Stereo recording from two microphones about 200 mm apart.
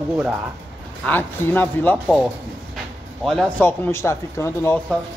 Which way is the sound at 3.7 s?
15° left (ahead or behind).